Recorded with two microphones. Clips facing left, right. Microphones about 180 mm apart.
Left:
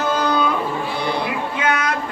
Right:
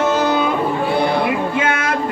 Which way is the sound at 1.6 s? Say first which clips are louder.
Right 1 dB; 25° right (ahead or behind).